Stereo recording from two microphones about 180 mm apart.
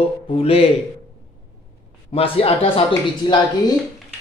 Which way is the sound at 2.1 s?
30° left (ahead or behind).